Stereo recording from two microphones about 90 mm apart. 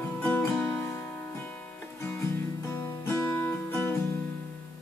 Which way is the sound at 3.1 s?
30° left (ahead or behind).